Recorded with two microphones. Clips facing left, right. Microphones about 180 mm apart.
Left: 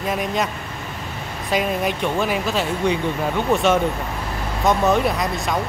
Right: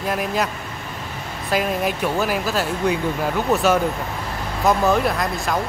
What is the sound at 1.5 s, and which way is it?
Speech, centre (ahead or behind).